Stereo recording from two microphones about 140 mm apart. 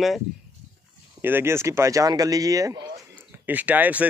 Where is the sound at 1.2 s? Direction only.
15° right (ahead or behind).